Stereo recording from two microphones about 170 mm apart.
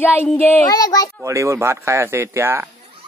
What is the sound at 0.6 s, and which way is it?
Speech, 20° left (ahead or behind).